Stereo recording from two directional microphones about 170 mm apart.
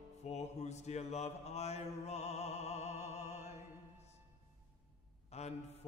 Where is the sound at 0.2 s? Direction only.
40° left (ahead or behind).